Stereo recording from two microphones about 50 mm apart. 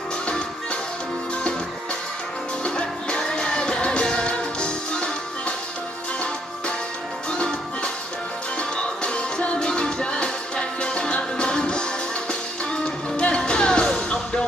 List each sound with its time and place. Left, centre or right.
2.6 s music: centre
7.3 s music: centre